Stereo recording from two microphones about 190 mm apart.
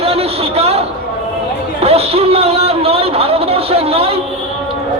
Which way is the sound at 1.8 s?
30° right (ahead or behind).